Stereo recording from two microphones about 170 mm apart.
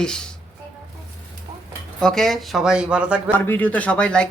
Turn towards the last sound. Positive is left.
turn(degrees=5)  # may be behind; listen again after turning